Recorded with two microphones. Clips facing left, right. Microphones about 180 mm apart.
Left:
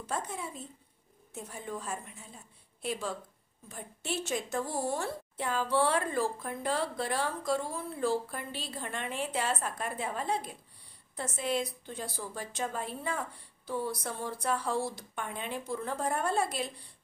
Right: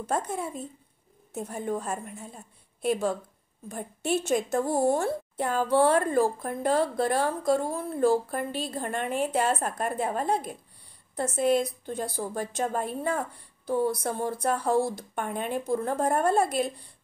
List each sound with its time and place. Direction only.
0.0 s a woman's voice: 50° right (ahead or behind)